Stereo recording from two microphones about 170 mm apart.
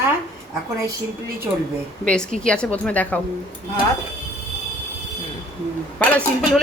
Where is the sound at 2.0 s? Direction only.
5° left (ahead or behind).